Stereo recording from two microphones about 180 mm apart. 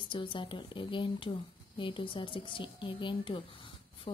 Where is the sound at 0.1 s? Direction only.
25° left (ahead or behind).